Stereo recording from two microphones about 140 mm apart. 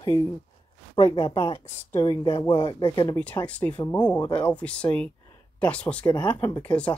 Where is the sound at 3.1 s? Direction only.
10° left (ahead or behind).